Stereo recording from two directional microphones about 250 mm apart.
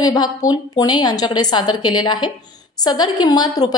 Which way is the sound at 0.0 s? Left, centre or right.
Centre.